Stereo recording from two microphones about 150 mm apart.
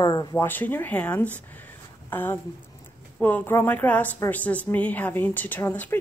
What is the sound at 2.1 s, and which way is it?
Speech, 15° left (ahead or behind).